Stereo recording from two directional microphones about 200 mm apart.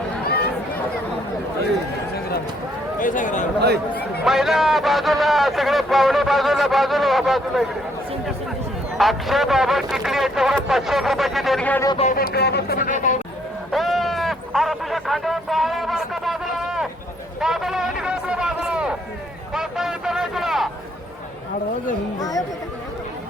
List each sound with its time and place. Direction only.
3.0 s speech: 40° left (ahead or behind)
4.2 s a man's voice: centre (ahead or behind)
9.0 s a man's voice: centre (ahead or behind)
11.9 s speech: 30° left (ahead or behind)
12.1 s speech: 50° left (ahead or behind)
13.7 s sheep: centre (ahead or behind)
17.4 s a sound: centre (ahead or behind)
22.2 s speech: 15° left (ahead or behind)